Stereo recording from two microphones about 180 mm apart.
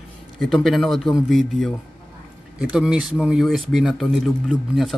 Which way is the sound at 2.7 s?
5° right (ahead or behind).